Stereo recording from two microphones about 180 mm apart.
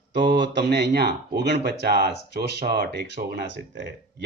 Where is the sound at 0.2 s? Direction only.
75° right (ahead or behind).